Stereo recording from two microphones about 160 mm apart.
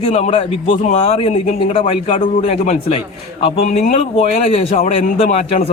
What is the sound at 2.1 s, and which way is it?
Speech, 55° left (ahead or behind).